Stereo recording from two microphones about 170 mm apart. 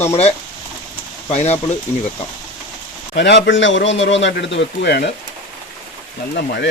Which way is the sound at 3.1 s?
90° left.